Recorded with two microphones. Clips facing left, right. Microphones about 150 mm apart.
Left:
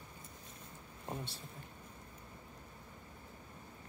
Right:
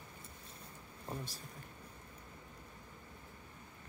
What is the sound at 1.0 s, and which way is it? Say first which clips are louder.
Speech: left 1 dB; 30° left (ahead or behind).